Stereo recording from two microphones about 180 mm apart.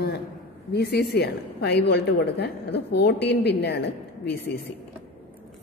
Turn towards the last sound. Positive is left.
turn(degrees=65)  # may be behind; listen again after turning